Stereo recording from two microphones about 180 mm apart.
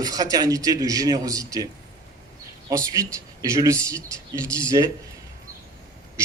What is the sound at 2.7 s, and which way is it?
A man's voice, 20° right (ahead or behind).